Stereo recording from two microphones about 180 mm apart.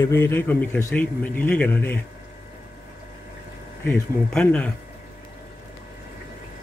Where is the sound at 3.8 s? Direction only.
5° left (ahead or behind).